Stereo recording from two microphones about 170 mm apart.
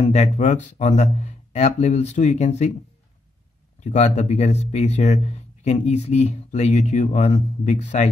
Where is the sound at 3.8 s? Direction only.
40° left (ahead or behind).